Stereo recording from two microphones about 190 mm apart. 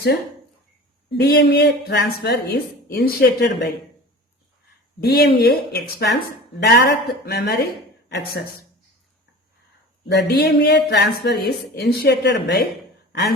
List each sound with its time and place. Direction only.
1.1 s a woman's voice: 60° left (ahead or behind)
4.9 s a woman's voice: 55° left (ahead or behind)
10.1 s a woman's voice: 60° left (ahead or behind)